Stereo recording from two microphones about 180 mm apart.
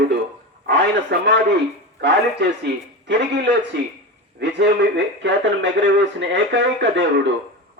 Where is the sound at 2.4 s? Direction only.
75° right (ahead or behind).